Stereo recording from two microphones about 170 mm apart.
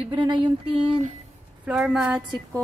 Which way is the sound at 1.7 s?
5° right (ahead or behind).